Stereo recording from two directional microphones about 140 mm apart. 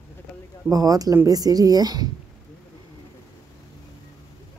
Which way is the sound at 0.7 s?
25° right (ahead or behind).